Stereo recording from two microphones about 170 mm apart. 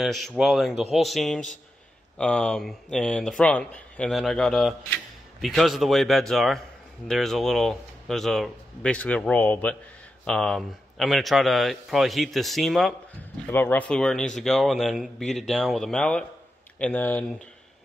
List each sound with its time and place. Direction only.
0.0 s speech: centre (ahead or behind)
13.5 s speech: 10° left (ahead or behind)